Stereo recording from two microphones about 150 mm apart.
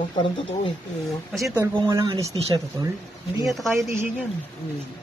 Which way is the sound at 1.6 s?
25° right (ahead or behind).